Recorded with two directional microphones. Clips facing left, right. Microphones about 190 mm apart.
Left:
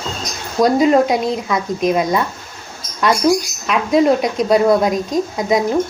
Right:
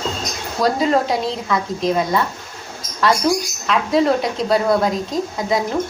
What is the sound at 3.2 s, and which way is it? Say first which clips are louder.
Speech: left 3 dB; 10° left (ahead or behind).